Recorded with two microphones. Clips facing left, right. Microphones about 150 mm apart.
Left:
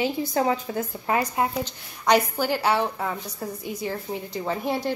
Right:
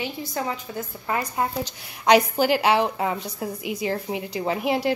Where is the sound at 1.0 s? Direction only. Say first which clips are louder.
Left 1 dB; 15° left (ahead or behind).